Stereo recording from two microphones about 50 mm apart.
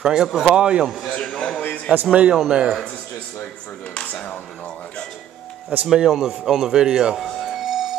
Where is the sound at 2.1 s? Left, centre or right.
Right.